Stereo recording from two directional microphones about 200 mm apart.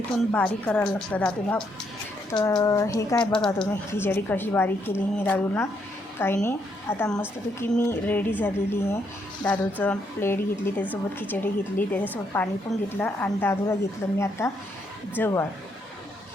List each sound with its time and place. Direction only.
0.3 s a woman's voice: 5° left (ahead or behind)
2.3 s a woman's voice: 20° left (ahead or behind)
3.3 s a woman's voice: 5° left (ahead or behind)